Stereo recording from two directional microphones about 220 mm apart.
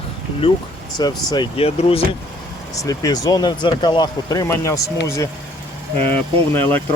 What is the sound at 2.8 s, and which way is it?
Speech, 15° left (ahead or behind).